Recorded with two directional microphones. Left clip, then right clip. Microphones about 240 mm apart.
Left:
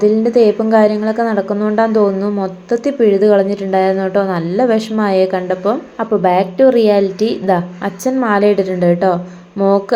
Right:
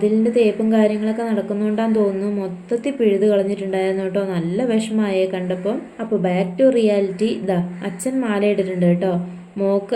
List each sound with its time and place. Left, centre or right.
0.0 s a woman's voice: centre